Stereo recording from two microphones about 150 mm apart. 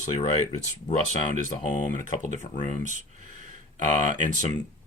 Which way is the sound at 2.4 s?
60° left (ahead or behind).